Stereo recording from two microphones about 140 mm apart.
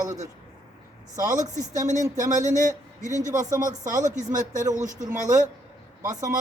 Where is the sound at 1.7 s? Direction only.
60° right (ahead or behind).